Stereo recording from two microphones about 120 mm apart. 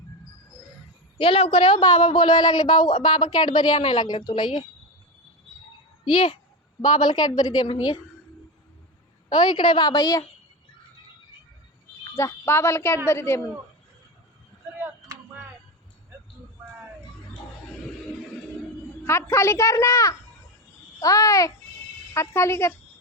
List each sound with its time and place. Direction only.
1.2 s a woman's voice: 50° left (ahead or behind)
6.8 s a woman's voice: 35° left (ahead or behind)
9.3 s a woman's voice: 40° left (ahead or behind)
12.1 s a woman's voice: 20° left (ahead or behind)
15.1 s a sound: 30° right (ahead or behind)
19.0 s a woman's voice: 20° left (ahead or behind)